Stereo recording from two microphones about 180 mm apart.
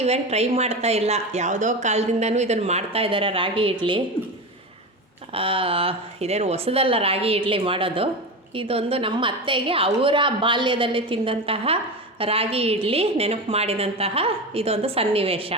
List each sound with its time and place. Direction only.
0.0 s speech: 35° right (ahead or behind)
5.3 s a woman's voice: 30° right (ahead or behind)